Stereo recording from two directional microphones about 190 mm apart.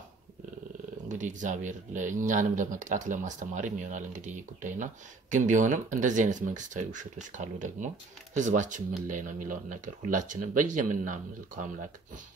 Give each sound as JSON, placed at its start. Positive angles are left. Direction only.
{"t": 1.0, "sound": "speech", "side_deg": -40}